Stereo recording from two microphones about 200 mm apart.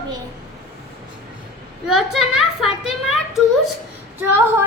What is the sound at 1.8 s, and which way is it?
A child's voice, centre (ahead or behind).